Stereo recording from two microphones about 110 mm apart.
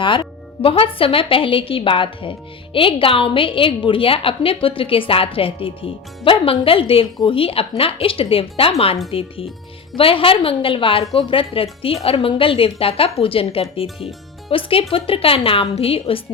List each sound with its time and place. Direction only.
0.0 s a woman's voice: 50° left (ahead or behind)